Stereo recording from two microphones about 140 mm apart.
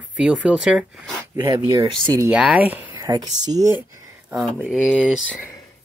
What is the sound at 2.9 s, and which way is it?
Speech, 30° right (ahead or behind).